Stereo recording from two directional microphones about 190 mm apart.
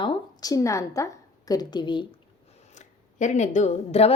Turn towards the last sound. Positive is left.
turn(degrees=35)  # may be behind; listen again after turning